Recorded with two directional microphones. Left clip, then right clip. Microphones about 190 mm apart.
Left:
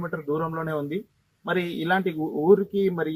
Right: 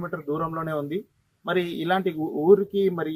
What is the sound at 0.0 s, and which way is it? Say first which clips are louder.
Speech: left 1 dB; 25° right (ahead or behind).